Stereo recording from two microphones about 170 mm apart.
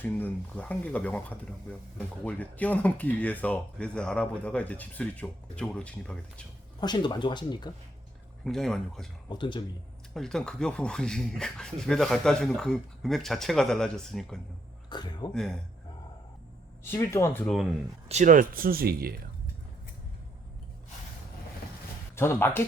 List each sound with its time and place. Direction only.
0.0 s speech: 10° left (ahead or behind)
6.7 s speech: 25° left (ahead or behind)
8.4 s speech: centre (ahead or behind)
9.3 s speech: 25° left (ahead or behind)
10.2 s speech: 5° left (ahead or behind)
14.8 s speech: 25° left (ahead or behind)
15.3 s speech: 5° left (ahead or behind)
16.9 s speech: 15° left (ahead or behind)
18.1 s speech: 45° right (ahead or behind); by 19.1 s 60° right (ahead or behind)
22.1 s speech: 15° left (ahead or behind)